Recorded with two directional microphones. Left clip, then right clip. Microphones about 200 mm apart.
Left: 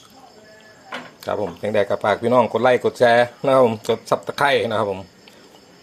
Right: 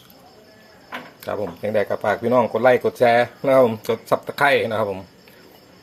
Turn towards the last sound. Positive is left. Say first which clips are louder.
# even
turn(degrees=15)  # may be behind; listen again after turning